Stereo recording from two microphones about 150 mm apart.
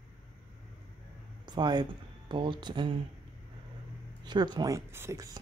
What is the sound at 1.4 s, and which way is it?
Speech, 30° right (ahead or behind).